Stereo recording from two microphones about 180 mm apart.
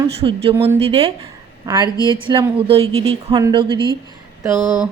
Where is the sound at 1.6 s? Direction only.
20° right (ahead or behind).